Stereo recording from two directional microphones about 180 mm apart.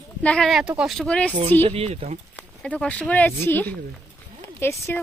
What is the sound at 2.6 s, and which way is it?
Speech, 5° left (ahead or behind).